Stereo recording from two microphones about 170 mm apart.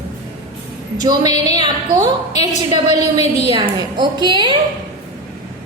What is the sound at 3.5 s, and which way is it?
A woman's voice, 25° right (ahead or behind).